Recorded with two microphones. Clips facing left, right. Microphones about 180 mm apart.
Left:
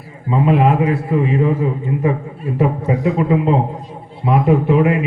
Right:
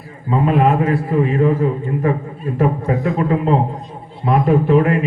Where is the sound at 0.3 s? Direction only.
15° left (ahead or behind).